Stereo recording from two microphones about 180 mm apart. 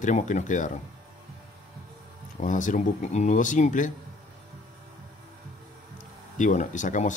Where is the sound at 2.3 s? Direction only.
45° left (ahead or behind).